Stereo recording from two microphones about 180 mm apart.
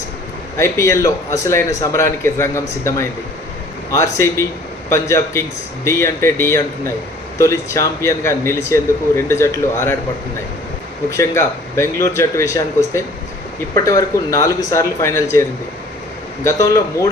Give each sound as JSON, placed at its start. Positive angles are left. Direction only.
{"t": 0.5, "sound": "a man's voice", "side_deg": 15}
{"t": 11.1, "sound": "a man's voice", "side_deg": 15}